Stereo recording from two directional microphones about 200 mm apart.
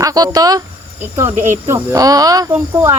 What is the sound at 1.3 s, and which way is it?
Speech, 40° right (ahead or behind).